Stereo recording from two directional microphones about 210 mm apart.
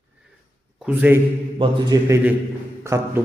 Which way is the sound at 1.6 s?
20° right (ahead or behind).